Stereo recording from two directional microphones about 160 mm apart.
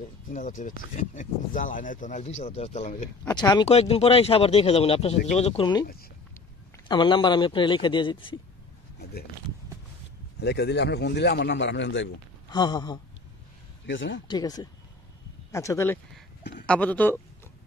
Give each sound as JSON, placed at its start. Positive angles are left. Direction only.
{"t": 0.3, "sound": "speech", "side_deg": 55}
{"t": 3.3, "sound": "speech", "side_deg": 25}
{"t": 3.6, "sound": "speech", "side_deg": 40}
{"t": 6.9, "sound": "speech", "side_deg": 30}
{"t": 10.4, "sound": "a man's voice", "side_deg": 90}
{"t": 12.4, "sound": "speech", "side_deg": 25}
{"t": 14.2, "sound": "speech", "side_deg": 25}